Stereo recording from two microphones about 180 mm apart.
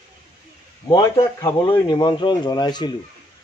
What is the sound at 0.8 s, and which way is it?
Speech, 20° left (ahead or behind).